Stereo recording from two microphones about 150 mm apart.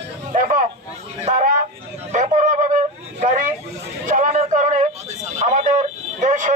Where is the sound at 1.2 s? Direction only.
55° right (ahead or behind).